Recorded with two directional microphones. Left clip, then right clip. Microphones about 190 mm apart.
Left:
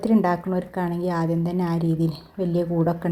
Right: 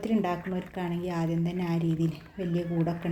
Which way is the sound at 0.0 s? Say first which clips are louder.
Left 8 dB; 35° left (ahead or behind).